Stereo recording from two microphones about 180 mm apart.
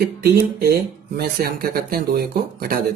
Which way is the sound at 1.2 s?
60° right (ahead or behind).